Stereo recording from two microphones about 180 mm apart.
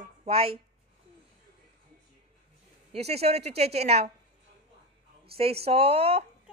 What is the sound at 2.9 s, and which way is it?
A woman's voice, 35° right (ahead or behind).